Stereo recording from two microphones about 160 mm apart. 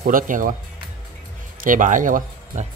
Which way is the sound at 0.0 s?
60° right (ahead or behind).